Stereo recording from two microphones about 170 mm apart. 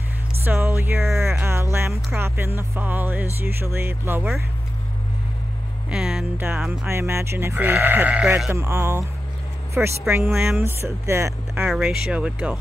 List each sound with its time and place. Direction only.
0.4 s music: 15° right (ahead or behind)
1.4 s speech: 15° right (ahead or behind)
5.9 s speech: 5° right (ahead or behind)
10.6 s speech: 15° right (ahead or behind)
11.6 s speech: centre (ahead or behind)